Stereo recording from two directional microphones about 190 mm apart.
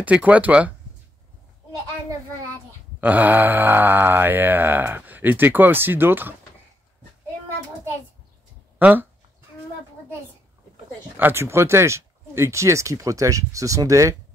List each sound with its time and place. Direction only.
0.0 s mantra: 5° right (ahead or behind)
3.0 s mantra: 10° right (ahead or behind)
8.7 s a sound: 10° right (ahead or behind)
11.1 s mantra: 10° right (ahead or behind)